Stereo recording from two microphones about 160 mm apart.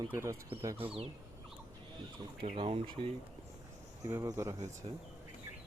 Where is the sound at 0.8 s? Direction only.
35° right (ahead or behind).